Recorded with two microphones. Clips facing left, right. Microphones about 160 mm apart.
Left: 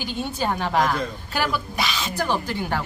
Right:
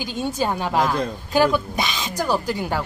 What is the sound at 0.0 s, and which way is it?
A woman's voice, 15° right (ahead or behind).